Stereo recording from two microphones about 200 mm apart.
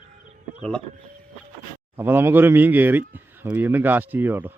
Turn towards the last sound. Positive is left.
turn(degrees=-10)  # may be behind; listen again after turning